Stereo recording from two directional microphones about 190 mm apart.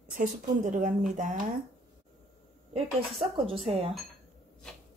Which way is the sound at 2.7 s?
30° right (ahead or behind).